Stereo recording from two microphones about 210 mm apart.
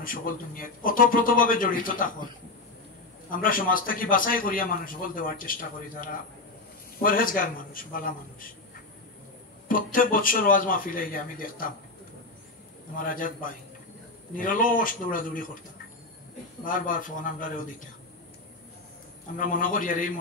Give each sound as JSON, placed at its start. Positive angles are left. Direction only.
{"t": 0.0, "sound": "a man's voice", "side_deg": 45}
{"t": 3.3, "sound": "a man's voice", "side_deg": 40}
{"t": 9.7, "sound": "a man's voice", "side_deg": 40}
{"t": 12.9, "sound": "a man's voice", "side_deg": 40}
{"t": 16.6, "sound": "a man's voice", "side_deg": 40}
{"t": 19.3, "sound": "a man's voice", "side_deg": 40}